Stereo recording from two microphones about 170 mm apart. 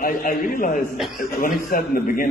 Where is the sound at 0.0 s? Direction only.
55° left (ahead or behind).